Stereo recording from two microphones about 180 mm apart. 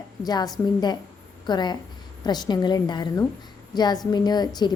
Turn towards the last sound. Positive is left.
turn(degrees=25)  # may be behind; listen again after turning